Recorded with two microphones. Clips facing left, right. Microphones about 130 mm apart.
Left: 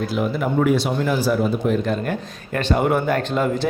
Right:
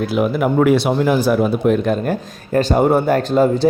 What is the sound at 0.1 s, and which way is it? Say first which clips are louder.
Speech: right 5 dB; 65° right (ahead or behind).